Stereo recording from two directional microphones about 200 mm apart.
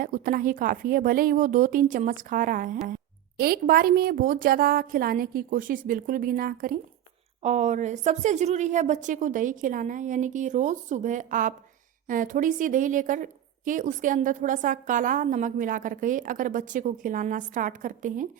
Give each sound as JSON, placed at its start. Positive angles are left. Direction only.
{"t": 0.0, "sound": "a woman's voice", "side_deg": -45}